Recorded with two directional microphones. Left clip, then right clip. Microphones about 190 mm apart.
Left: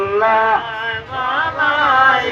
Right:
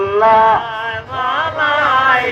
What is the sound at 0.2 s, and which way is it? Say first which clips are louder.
Mantra: right 5 dB; 50° left (ahead or behind).